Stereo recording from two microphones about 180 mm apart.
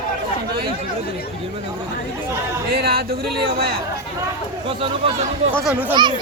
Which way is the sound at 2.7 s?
60° right (ahead or behind).